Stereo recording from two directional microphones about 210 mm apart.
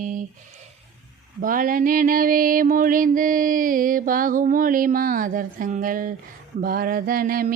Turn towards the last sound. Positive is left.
turn(degrees=-45)  # may be behind; listen again after turning